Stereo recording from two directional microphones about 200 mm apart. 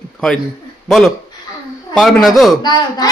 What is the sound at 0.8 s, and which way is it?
A man's voice, centre (ahead or behind).